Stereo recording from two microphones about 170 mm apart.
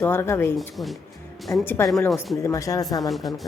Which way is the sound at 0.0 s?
15° left (ahead or behind).